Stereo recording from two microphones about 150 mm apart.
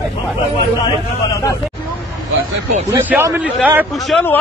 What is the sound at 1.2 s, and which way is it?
Speech, 20° left (ahead or behind).